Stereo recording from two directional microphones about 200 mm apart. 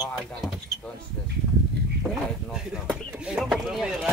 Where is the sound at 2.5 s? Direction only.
5° right (ahead or behind).